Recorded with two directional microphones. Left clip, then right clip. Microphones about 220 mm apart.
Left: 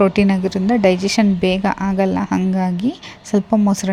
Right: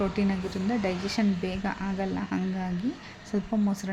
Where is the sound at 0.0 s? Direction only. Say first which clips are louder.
Left 14 dB; 40° left (ahead or behind).